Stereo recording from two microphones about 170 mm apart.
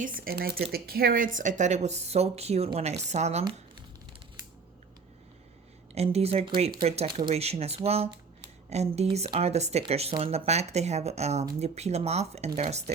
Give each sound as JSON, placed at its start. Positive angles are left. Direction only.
{"t": 0.0, "sound": "speech", "side_deg": -55}
{"t": 5.9, "sound": "speech", "side_deg": -40}